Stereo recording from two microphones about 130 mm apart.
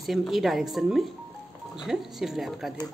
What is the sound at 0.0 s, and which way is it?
A woman's voice, centre (ahead or behind).